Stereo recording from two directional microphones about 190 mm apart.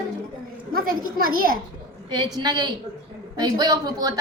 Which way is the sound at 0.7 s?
50° right (ahead or behind).